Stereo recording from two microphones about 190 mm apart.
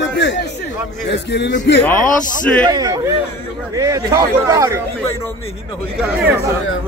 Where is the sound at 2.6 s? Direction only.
20° right (ahead or behind).